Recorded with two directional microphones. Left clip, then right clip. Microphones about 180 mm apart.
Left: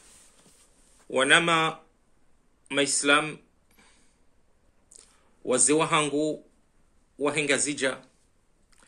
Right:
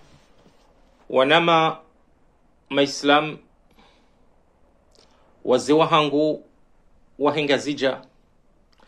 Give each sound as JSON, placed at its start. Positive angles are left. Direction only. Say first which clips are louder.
{"t": 1.1, "sound": "speech", "louder": "right 5 dB", "side_deg": 15}
{"t": 2.7, "sound": "a sound", "louder": "right 4 dB", "side_deg": 15}
{"t": 7.2, "sound": "speech", "louder": "right 5 dB", "side_deg": 15}